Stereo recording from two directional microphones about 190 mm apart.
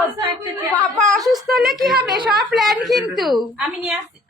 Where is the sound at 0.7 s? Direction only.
5° left (ahead or behind).